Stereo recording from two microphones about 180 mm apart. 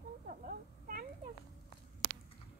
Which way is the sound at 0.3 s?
50° right (ahead or behind).